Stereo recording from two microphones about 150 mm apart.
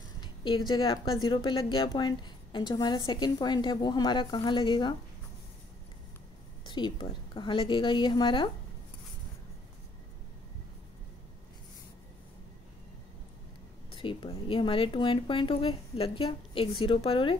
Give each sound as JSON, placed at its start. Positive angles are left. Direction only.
{"t": 0.2, "sound": "a woman's voice", "side_deg": 30}
{"t": 6.6, "sound": "speech", "side_deg": 30}
{"t": 13.8, "sound": "speech", "side_deg": 35}